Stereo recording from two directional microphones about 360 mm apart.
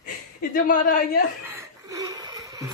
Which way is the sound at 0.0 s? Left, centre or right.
Left.